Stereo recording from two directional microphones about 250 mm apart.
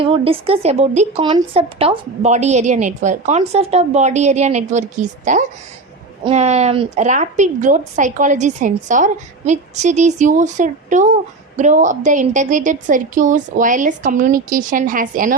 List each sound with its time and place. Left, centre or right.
0.0 s a woman's voice: right